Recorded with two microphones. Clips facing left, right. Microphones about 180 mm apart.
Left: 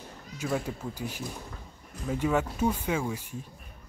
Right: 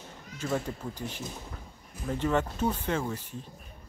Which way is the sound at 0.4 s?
5° left (ahead or behind).